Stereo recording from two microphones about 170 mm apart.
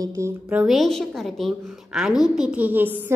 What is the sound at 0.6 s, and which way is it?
A woman's voice, centre (ahead or behind).